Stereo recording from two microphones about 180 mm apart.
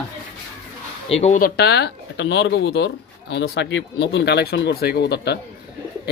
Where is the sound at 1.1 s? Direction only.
35° left (ahead or behind).